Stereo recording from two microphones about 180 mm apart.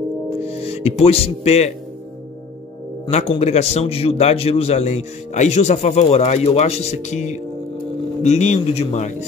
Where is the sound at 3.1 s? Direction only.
35° left (ahead or behind).